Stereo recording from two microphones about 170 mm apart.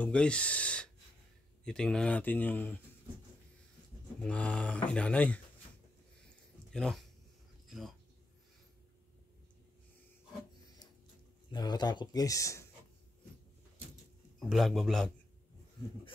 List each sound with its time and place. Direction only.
0.0 s speech: 5° left (ahead or behind)
4.2 s speech: 5° left (ahead or behind)
6.2 s a sound: 5° left (ahead or behind)
11.5 s speech: 25° left (ahead or behind)
14.5 s a man's voice: centre (ahead or behind)